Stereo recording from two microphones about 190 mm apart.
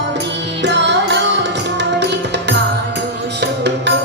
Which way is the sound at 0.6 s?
65° right (ahead or behind).